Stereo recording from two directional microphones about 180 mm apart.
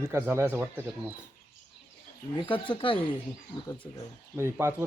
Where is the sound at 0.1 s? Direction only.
15° right (ahead or behind).